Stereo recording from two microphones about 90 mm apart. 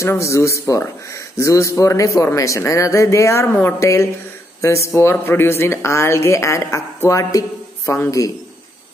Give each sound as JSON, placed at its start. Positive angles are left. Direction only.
{"t": 0.0, "sound": "speech", "side_deg": 35}